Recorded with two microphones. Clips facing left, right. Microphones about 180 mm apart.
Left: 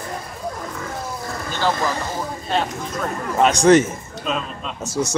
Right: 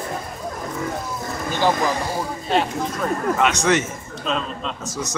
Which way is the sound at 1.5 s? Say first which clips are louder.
Right 2 dB; 15° right (ahead or behind).